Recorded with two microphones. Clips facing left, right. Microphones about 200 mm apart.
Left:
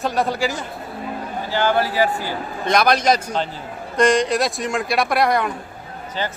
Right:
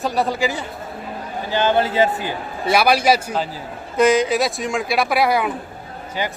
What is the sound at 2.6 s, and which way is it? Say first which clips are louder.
A man's voice: right 1 dB; 10° right (ahead or behind).